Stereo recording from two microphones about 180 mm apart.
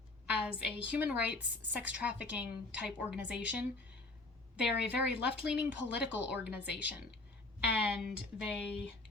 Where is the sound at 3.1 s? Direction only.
70° left (ahead or behind).